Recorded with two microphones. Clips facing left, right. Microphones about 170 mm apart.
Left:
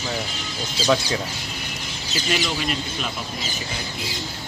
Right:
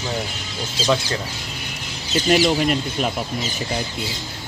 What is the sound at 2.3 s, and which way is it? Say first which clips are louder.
Speech: right 8 dB; 45° right (ahead or behind).